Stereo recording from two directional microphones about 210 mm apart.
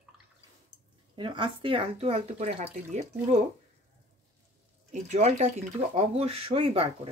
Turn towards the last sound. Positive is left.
turn(degrees=-30)  # may be behind; listen again after turning